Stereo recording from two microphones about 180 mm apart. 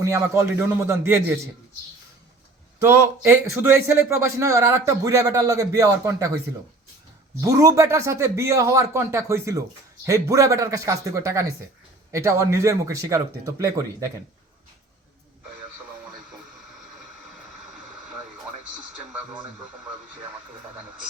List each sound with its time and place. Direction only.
0.0 s a man's voice: 15° right (ahead or behind)
2.8 s a man's voice: 15° right (ahead or behind)
7.4 s a man's voice: 20° right (ahead or behind)